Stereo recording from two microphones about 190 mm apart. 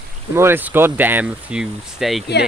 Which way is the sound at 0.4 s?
10° right (ahead or behind).